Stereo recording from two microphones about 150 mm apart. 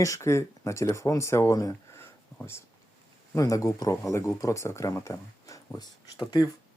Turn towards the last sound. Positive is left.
turn(degrees=25)  # may be behind; listen again after turning